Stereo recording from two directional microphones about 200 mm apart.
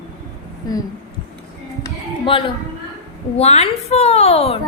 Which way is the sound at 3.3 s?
30° left (ahead or behind).